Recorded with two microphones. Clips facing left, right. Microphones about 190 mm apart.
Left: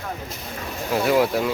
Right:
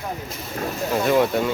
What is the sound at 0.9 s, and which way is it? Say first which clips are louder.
Speech: even; 5° left (ahead or behind).